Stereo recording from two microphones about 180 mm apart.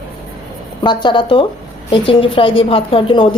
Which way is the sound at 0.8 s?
25° left (ahead or behind).